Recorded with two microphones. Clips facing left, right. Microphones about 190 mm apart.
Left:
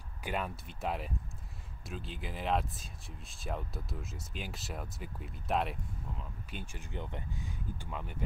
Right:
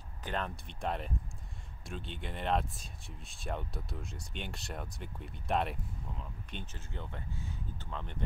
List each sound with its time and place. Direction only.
0.2 s speech: 10° left (ahead or behind)